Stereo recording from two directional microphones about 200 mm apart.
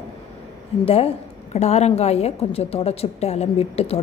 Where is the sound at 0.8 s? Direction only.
30° left (ahead or behind).